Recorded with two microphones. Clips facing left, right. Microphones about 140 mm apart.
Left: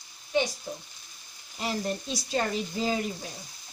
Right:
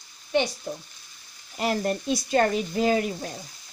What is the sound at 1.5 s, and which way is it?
Speech, 65° right (ahead or behind).